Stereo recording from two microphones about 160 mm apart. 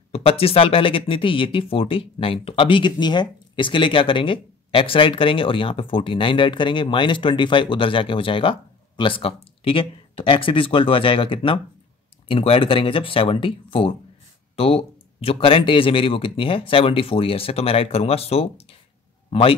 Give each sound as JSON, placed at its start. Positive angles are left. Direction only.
{"t": 0.1, "sound": "speech", "side_deg": 35}